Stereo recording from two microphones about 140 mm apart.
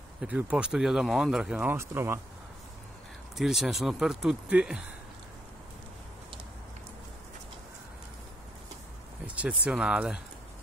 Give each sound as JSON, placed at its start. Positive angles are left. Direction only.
{"t": 0.2, "sound": "speech", "side_deg": -10}
{"t": 3.3, "sound": "speech", "side_deg": 0}
{"t": 9.2, "sound": "speech", "side_deg": -10}